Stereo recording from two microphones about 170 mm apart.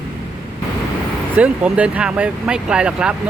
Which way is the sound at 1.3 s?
10° right (ahead or behind).